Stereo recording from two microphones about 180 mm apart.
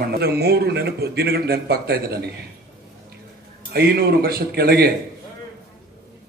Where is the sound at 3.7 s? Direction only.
60° right (ahead or behind).